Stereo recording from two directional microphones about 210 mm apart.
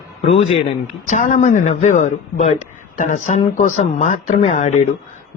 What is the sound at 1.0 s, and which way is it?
A man's voice, 35° left (ahead or behind).